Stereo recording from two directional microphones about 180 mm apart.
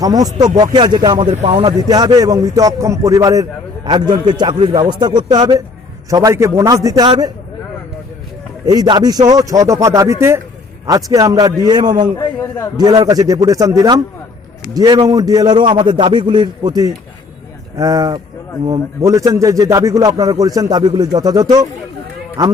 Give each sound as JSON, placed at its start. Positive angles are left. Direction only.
{"t": 0.0, "sound": "a man's voice", "side_deg": -20}
{"t": 1.3, "sound": "a man's voice", "side_deg": -35}
{"t": 8.6, "sound": "a man's voice", "side_deg": -20}
{"t": 12.1, "sound": "a man's voice", "side_deg": 15}
{"t": 12.7, "sound": "a man's voice", "side_deg": -20}